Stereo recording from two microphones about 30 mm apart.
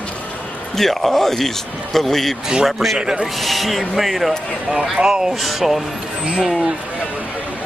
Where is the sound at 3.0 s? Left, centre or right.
Right.